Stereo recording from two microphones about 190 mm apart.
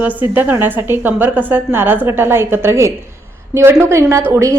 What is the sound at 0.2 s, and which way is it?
A woman's voice, 10° right (ahead or behind).